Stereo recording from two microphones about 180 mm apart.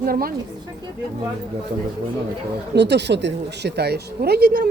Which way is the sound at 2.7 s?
70° right (ahead or behind).